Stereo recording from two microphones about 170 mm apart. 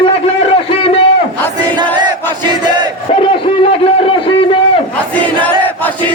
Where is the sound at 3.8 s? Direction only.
35° left (ahead or behind).